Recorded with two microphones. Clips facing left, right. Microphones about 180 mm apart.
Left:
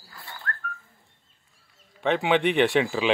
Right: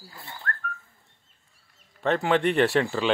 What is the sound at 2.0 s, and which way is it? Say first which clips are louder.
Speech: even; centre (ahead or behind).